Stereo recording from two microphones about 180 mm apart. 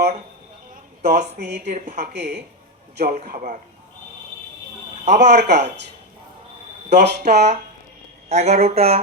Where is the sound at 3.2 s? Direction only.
45° right (ahead or behind).